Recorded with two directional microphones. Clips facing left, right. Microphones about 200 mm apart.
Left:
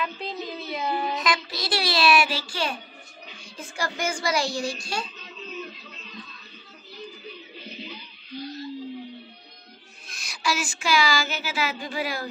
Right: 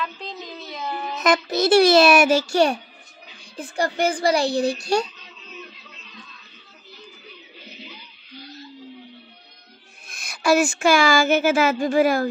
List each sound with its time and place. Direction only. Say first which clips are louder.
0.0 s child singing: left 1 dB; 5° left (ahead or behind)
1.2 s a woman's voice: right 9 dB; 45° right (ahead or behind)
10.0 s speech: right 9 dB; 55° right (ahead or behind)